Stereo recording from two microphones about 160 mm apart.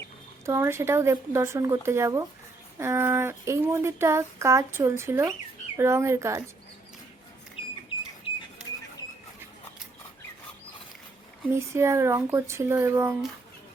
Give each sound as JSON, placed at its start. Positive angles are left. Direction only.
{"t": 0.4, "sound": "speech", "side_deg": -15}
{"t": 7.6, "sound": "a sound", "side_deg": 35}
{"t": 11.5, "sound": "speech", "side_deg": -15}